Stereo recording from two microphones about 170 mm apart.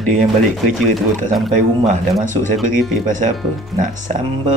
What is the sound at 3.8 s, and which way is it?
Speech, 50° right (ahead or behind).